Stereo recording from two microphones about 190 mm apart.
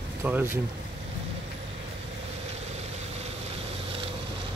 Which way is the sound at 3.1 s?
30° right (ahead or behind).